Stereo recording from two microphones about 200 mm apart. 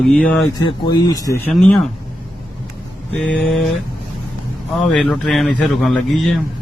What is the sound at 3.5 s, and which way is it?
Speech, centre (ahead or behind).